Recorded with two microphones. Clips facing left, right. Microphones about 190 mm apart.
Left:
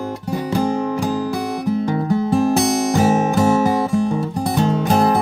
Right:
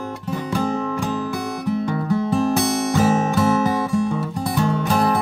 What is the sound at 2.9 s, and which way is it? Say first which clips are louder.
Music: left 1 dB; 15° left (ahead or behind).